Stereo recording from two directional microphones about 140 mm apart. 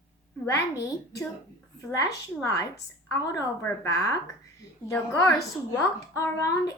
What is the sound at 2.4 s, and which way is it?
A woman's voice, 25° left (ahead or behind).